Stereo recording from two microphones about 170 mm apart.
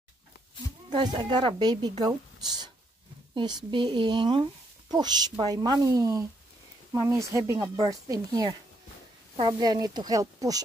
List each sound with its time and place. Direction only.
0.9 s speech: 25° right (ahead or behind)